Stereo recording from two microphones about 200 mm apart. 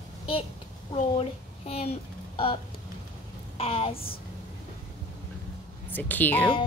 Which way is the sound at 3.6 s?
30° left (ahead or behind).